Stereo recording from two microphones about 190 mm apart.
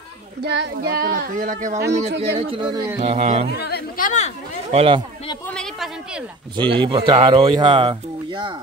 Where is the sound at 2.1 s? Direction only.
60° right (ahead or behind).